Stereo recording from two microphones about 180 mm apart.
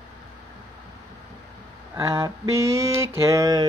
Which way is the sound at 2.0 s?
15° right (ahead or behind).